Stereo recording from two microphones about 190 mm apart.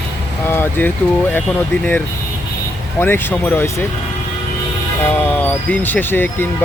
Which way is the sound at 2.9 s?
10° left (ahead or behind).